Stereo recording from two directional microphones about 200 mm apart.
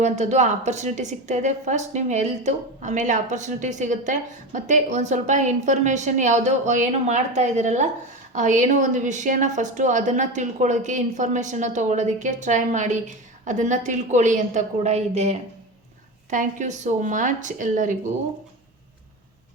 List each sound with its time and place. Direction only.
0.0 s a woman's voice: 35° right (ahead or behind)